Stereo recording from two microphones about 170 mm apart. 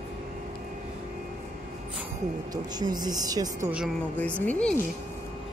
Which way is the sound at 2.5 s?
25° right (ahead or behind).